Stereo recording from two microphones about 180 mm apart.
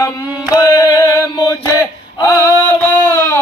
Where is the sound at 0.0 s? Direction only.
20° left (ahead or behind).